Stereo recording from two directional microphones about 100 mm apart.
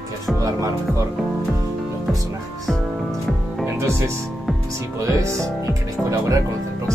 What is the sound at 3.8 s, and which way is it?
Speech, 25° right (ahead or behind).